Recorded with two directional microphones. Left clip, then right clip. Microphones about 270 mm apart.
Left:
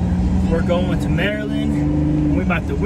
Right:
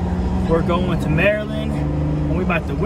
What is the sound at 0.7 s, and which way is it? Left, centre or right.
Speech, centre.